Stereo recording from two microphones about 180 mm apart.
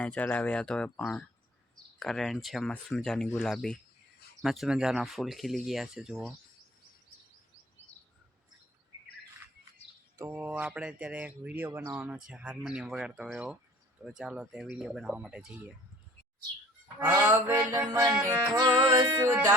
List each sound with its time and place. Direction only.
0.0 s speech: 10° left (ahead or behind)
10.2 s speech: 10° right (ahead or behind)
17.0 s speech: 10° right (ahead or behind)